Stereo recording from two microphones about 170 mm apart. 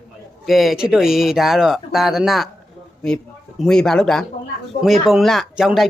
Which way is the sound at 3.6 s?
5° left (ahead or behind).